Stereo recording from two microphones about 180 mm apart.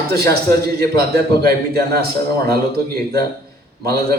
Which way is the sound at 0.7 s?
60° right (ahead or behind).